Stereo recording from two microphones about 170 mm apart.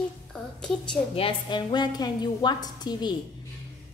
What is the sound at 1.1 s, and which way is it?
A woman's voice, 30° left (ahead or behind).